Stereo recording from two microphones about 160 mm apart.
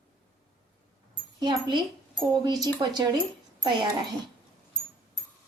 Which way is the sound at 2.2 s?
25° right (ahead or behind).